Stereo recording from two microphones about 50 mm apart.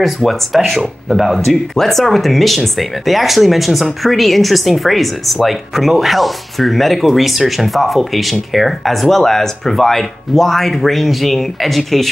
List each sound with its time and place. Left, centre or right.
0.0 s speech: centre